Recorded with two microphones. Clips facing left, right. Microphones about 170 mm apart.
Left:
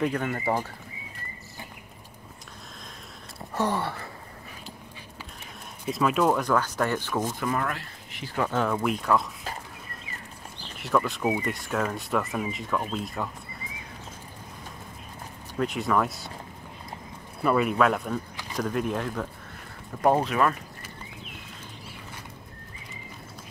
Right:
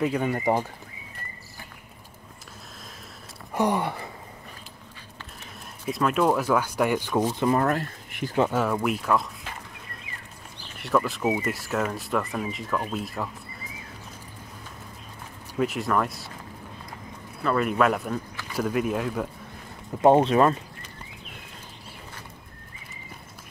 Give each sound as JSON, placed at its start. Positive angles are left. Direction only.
{"t": 0.0, "sound": "speech", "side_deg": -10}
{"t": 3.5, "sound": "a sound", "side_deg": -15}
{"t": 5.9, "sound": "speech", "side_deg": 0}
{"t": 7.6, "sound": "speech", "side_deg": -45}
{"t": 8.5, "sound": "speech", "side_deg": -10}
{"t": 10.8, "sound": "speech", "side_deg": 0}
{"t": 15.6, "sound": "speech", "side_deg": 0}
{"t": 17.4, "sound": "speech", "side_deg": 10}
{"t": 17.6, "sound": "speech", "side_deg": 0}
{"t": 20.0, "sound": "speech", "side_deg": -25}